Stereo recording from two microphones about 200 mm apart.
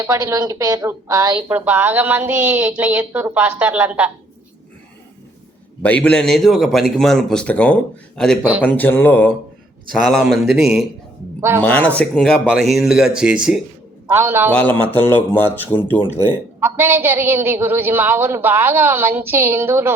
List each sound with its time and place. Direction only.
0.0 s a woman's voice: 15° right (ahead or behind)
1.5 s a woman's voice: 10° right (ahead or behind)
5.8 s speech: 5° left (ahead or behind)
11.3 s speech: 10° right (ahead or behind)
11.6 s a woman's voice: 10° left (ahead or behind); by 14.5 s 10° right (ahead or behind)
14.5 s speech: 10° left (ahead or behind)
16.6 s a woman's voice: 10° right (ahead or behind)